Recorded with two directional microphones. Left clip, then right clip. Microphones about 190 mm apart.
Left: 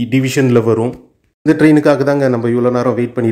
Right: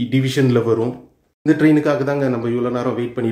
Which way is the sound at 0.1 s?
35° left (ahead or behind).